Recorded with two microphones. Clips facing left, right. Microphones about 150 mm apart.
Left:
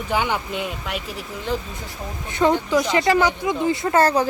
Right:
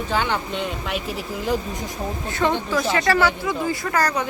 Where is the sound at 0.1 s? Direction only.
10° left (ahead or behind).